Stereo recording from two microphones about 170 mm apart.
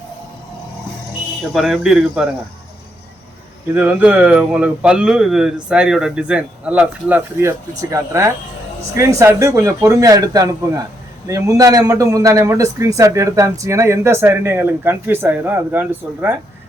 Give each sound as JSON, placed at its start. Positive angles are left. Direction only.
{"t": 1.5, "sound": "speech", "side_deg": 0}
{"t": 3.8, "sound": "a man's voice", "side_deg": -10}